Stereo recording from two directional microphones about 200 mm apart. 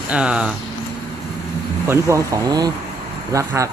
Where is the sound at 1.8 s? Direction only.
15° right (ahead or behind).